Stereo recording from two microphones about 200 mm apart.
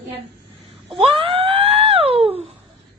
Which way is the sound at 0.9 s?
25° right (ahead or behind).